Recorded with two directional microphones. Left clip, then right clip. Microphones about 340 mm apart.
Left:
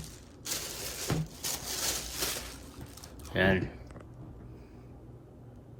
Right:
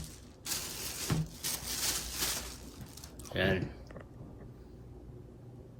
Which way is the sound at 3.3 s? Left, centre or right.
Centre.